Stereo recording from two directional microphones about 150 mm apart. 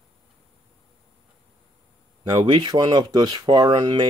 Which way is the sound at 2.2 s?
30° right (ahead or behind).